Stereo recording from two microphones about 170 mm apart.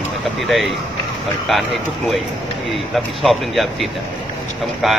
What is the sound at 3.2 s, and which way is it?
Speech, centre (ahead or behind).